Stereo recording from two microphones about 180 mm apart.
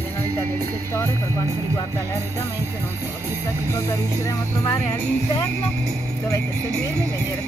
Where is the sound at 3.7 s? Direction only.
15° left (ahead or behind).